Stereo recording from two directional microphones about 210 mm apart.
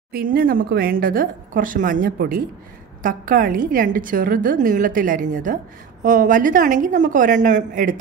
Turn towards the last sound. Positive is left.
turn(degrees=-40)  # may be behind; listen again after turning